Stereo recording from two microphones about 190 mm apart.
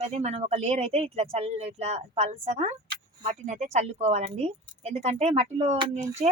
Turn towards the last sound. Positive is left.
turn(degrees=-30)  # may be behind; listen again after turning